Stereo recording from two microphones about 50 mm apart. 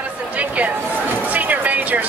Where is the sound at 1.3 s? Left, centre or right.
Right.